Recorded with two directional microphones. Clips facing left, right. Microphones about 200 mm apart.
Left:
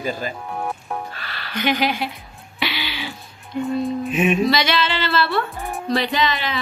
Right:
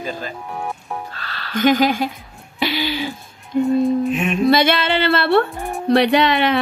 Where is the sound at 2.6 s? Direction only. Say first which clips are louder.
Right 6 dB; 45° right (ahead or behind).